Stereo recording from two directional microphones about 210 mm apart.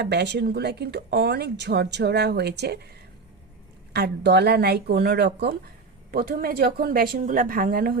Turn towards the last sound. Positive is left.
turn(degrees=-45)  # may be behind; listen again after turning